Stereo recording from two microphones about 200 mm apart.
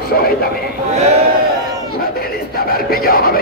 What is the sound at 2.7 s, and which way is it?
Speech, 50° left (ahead or behind).